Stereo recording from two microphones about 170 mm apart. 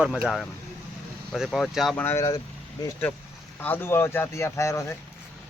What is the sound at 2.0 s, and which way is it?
Speech, 15° left (ahead or behind).